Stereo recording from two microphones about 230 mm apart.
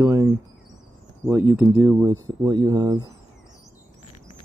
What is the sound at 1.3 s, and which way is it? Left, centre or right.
Speech, centre.